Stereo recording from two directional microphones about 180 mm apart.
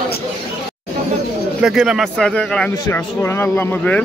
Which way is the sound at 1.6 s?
Centre (ahead or behind).